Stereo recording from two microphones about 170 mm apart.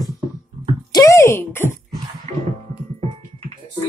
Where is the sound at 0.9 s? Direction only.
20° left (ahead or behind).